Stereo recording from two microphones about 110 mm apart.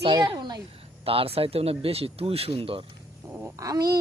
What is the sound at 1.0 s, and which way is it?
Speech, 60° right (ahead or behind).